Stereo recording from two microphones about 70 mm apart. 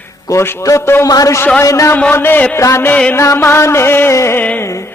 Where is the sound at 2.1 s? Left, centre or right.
Left.